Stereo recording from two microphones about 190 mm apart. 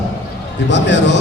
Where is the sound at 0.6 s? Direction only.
70° left (ahead or behind).